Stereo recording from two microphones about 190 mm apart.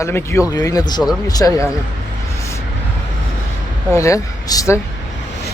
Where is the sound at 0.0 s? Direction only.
15° left (ahead or behind).